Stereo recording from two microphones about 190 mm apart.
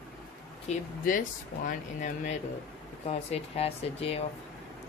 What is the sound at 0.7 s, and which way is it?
Speech, 35° left (ahead or behind).